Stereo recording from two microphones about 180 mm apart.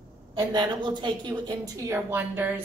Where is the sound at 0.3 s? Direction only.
25° right (ahead or behind).